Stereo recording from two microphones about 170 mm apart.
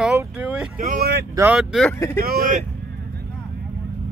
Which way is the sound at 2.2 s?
55° right (ahead or behind).